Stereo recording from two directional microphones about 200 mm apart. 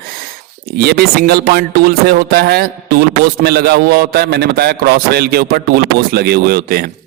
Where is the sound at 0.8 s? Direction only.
50° right (ahead or behind).